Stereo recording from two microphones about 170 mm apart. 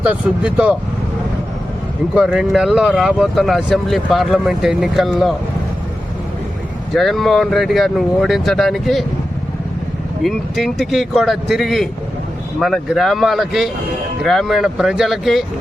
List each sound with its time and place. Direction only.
0.0 s speech: 10° right (ahead or behind)
2.1 s speech: centre (ahead or behind)
6.9 s speech: centre (ahead or behind)
10.2 s speech: centre (ahead or behind)